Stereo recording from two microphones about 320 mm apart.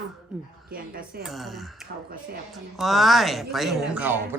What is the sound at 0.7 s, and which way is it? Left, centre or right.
Speech, right.